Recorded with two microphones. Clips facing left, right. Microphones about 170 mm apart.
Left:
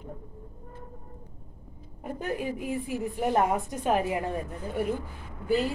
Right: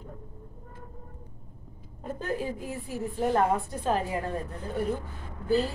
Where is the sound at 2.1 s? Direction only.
15° left (ahead or behind).